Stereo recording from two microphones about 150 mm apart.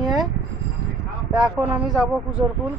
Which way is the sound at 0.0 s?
25° right (ahead or behind).